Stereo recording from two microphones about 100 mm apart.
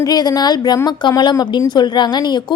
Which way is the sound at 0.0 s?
40° left (ahead or behind).